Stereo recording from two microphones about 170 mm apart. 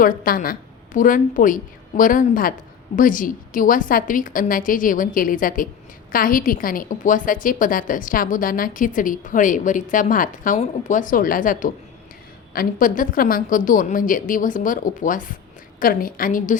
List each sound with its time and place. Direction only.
0.0 s a woman's voice: 55° left (ahead or behind)